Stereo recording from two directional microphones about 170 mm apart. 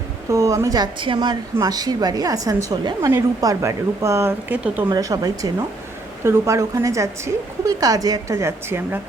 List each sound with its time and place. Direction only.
0.3 s a woman's voice: 20° right (ahead or behind)